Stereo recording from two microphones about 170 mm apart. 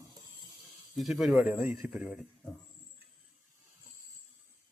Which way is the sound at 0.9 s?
Centre (ahead or behind).